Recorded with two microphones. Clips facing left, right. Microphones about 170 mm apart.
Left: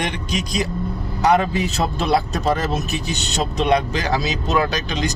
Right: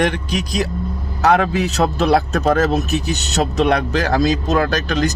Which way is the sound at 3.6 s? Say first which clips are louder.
Left 1 dB; 55° right (ahead or behind).